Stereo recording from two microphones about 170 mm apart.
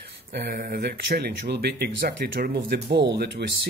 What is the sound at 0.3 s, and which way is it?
Speech, 80° right.